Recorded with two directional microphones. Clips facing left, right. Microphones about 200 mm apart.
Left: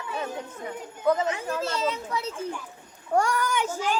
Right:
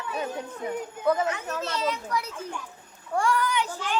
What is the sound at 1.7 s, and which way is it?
Speech, 25° left (ahead or behind).